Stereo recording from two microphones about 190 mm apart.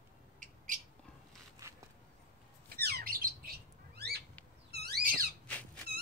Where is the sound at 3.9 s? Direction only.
60° right (ahead or behind).